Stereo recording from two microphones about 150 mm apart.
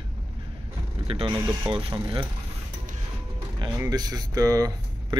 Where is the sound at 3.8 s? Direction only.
25° right (ahead or behind).